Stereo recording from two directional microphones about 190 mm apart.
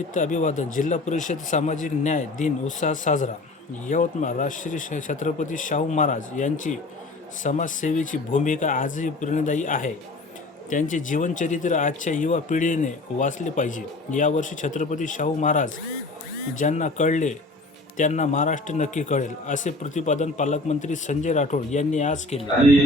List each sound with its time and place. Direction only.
0.1 s a man's voice: 40° left (ahead or behind)